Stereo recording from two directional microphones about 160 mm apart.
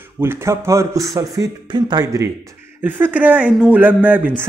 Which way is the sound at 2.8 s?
10° right (ahead or behind).